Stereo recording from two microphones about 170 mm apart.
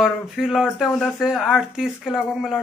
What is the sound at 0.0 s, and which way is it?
Speech, centre (ahead or behind).